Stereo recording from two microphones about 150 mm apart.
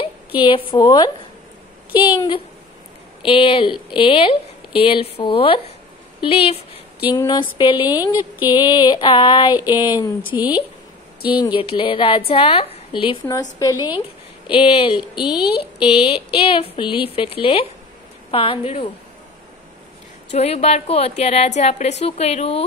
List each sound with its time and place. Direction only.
0.7 s a woman's voice: 25° left (ahead or behind)
2.1 s speech: 30° left (ahead or behind)
10.3 s a woman's voice: 10° right (ahead or behind)
11.3 s speech: 30° left (ahead or behind)
13.3 s a woman's voice: 25° left (ahead or behind)
14.5 s speech: 40° left (ahead or behind)
15.1 s a woman's voice: 5° right (ahead or behind)
15.4 s speech: 35° left (ahead or behind)
20.3 s a woman's voice: 45° left (ahead or behind)